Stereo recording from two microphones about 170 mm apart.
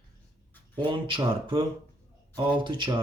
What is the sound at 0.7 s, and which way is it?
Speech, 30° right (ahead or behind).